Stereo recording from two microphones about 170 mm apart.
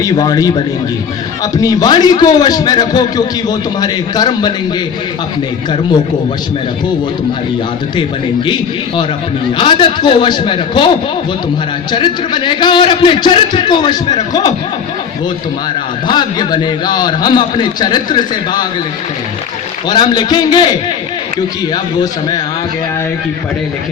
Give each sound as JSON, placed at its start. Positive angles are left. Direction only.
{"t": 0.0, "sound": "a man's voice", "side_deg": 20}
{"t": 9.6, "sound": "a man's voice", "side_deg": 30}
{"t": 16.0, "sound": "a man's voice", "side_deg": 25}
{"t": 19.9, "sound": "a man's voice", "side_deg": 25}
{"t": 21.7, "sound": "a man's voice", "side_deg": 25}